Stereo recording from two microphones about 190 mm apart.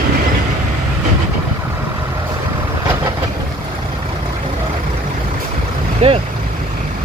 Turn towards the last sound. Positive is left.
turn(degrees=-35)  # may be behind; listen again after turning